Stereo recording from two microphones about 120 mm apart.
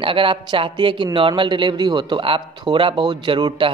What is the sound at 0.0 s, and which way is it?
A man's voice, 50° right (ahead or behind).